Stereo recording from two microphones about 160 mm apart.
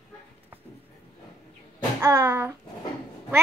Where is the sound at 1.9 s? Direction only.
15° right (ahead or behind).